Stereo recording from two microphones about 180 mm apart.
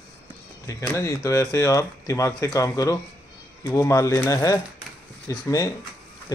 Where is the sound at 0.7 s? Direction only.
15° left (ahead or behind).